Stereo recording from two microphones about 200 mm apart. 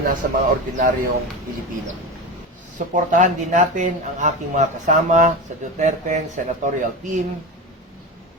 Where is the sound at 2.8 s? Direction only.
40° right (ahead or behind).